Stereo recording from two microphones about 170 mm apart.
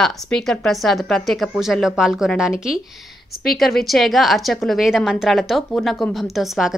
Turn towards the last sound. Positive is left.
turn(degrees=0)  # may be behind; listen again after turning